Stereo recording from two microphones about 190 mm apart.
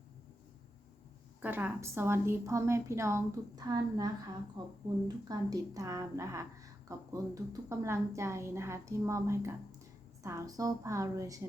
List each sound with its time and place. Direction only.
1.4 s a woman's voice: 10° right (ahead or behind)